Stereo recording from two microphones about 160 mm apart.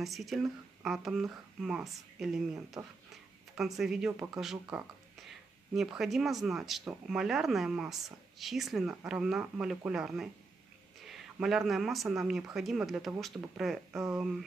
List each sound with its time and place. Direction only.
0.0 s speech: centre (ahead or behind)
2.8 s speech: 10° right (ahead or behind)
3.5 s speech: centre (ahead or behind)
13.9 s speech: 15° right (ahead or behind)